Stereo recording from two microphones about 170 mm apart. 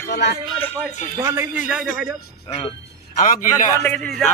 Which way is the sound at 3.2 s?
50° left (ahead or behind).